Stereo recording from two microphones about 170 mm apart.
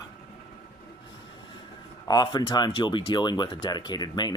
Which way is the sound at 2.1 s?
25° left (ahead or behind).